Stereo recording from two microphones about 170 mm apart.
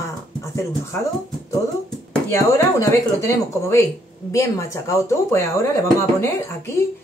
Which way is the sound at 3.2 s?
15° left (ahead or behind).